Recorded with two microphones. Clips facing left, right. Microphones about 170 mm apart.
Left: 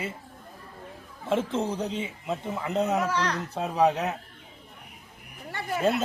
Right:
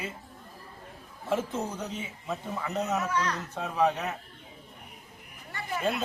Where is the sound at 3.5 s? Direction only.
35° left (ahead or behind).